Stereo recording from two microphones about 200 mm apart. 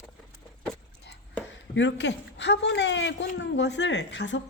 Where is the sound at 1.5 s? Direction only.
65° left (ahead or behind).